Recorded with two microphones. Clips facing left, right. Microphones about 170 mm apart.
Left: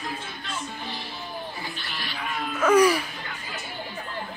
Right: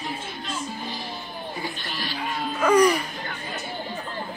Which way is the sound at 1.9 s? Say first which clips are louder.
Right 1 dB; 35° right (ahead or behind).